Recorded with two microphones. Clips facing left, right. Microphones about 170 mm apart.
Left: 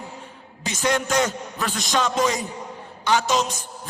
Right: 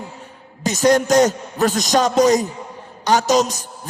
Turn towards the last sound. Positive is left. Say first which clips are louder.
# right 5 dB
turn(degrees=-40)  # may be behind; listen again after turning